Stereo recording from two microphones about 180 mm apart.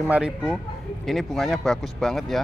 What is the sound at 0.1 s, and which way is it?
Speech, 5° right (ahead or behind).